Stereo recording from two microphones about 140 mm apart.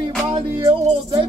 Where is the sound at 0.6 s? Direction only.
45° right (ahead or behind).